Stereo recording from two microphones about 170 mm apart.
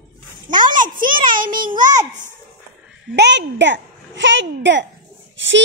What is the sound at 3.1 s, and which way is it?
A child's voice, 90° right.